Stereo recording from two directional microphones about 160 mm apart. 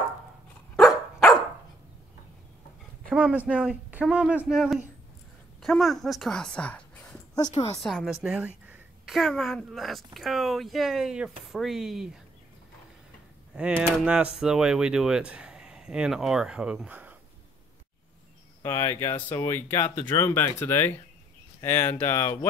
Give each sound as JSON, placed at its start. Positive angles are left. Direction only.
{"t": 0.7, "sound": "dog", "side_deg": 0}
{"t": 3.2, "sound": "a woman's voice", "side_deg": -10}
{"t": 9.1, "sound": "speech", "side_deg": 0}
{"t": 13.6, "sound": "speech", "side_deg": -5}
{"t": 18.6, "sound": "speech", "side_deg": 15}